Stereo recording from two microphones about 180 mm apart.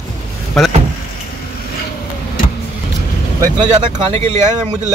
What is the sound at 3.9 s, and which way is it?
Speech, 40° right (ahead or behind).